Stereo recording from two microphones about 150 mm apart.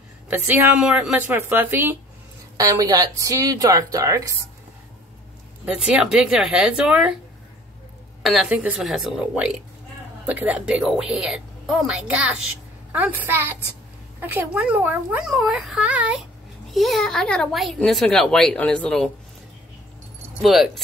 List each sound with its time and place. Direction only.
0.3 s speech: 10° right (ahead or behind)
5.7 s speech: 5° right (ahead or behind)
8.2 s a woman's voice: centre (ahead or behind)
15.2 s speech: centre (ahead or behind)
20.4 s speech: centre (ahead or behind)